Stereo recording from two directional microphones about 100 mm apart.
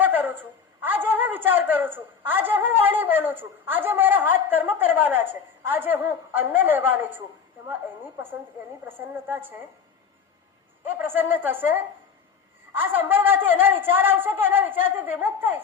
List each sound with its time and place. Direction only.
0.0 s a sound: 20° right (ahead or behind)
0.8 s a woman's voice: 20° right (ahead or behind)
8.9 s a woman's voice: 20° right (ahead or behind)
11.0 s a woman's voice: 20° right (ahead or behind)